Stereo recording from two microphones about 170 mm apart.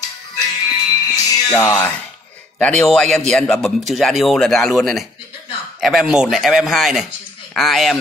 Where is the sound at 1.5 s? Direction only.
20° left (ahead or behind).